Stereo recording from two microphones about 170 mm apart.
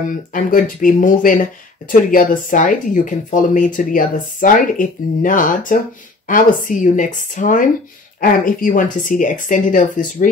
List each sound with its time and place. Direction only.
0.1 s speech: 50° left (ahead or behind)